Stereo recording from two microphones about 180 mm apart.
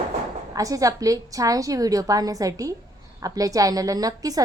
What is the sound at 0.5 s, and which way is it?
A woman's voice, 20° right (ahead or behind).